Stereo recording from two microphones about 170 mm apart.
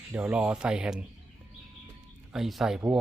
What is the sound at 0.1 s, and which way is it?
Speech, 10° right (ahead or behind).